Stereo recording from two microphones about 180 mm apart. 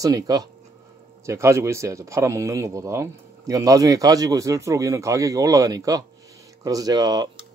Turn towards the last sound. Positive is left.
turn(degrees=-20)  # may be behind; listen again after turning